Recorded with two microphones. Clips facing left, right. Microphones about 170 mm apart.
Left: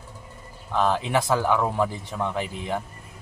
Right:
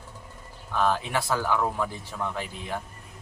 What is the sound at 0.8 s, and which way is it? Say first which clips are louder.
Speech: left 3 dB; 20° left (ahead or behind).